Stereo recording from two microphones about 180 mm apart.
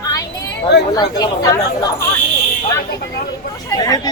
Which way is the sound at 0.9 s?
20° left (ahead or behind).